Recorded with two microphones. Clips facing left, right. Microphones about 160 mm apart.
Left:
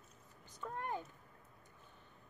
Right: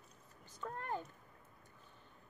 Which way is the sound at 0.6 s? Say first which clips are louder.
Even; 15° left (ahead or behind).